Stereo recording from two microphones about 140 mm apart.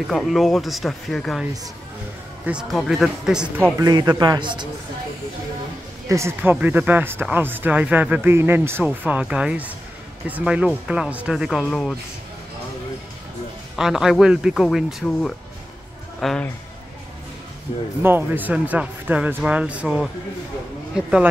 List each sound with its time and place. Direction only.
0.1 s speech: centre (ahead or behind)
2.4 s speech: 5° right (ahead or behind)
3.7 s speech: 25° right (ahead or behind)
6.0 s speech: 20° right (ahead or behind); by 11.9 s 5° left (ahead or behind)
13.7 s speech: 5° right (ahead or behind)
18.0 s speech: 15° right (ahead or behind)